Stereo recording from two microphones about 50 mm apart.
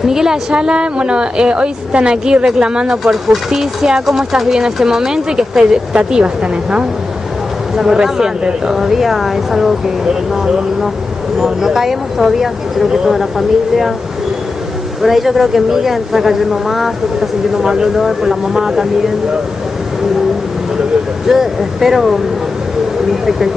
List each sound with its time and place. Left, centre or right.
0.0 s a woman's voice: centre
7.7 s speech: centre
15.0 s speech: centre
21.3 s speech: centre